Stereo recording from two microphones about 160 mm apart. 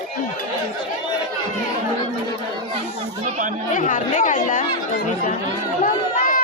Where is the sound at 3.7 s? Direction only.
55° left (ahead or behind).